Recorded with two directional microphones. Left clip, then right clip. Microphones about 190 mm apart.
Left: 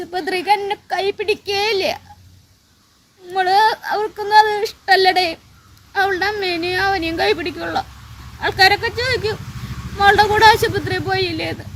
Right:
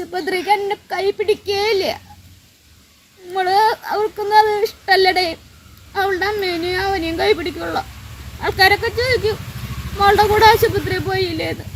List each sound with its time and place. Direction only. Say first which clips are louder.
0.0 s speech: even; 15° left (ahead or behind)
3.3 s speech: left 1 dB; 15° left (ahead or behind)